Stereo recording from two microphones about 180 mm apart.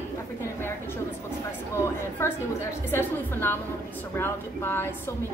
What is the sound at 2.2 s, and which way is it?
A woman's voice, 15° left (ahead or behind).